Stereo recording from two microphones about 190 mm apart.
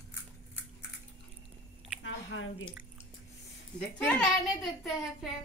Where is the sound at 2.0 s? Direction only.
85° left.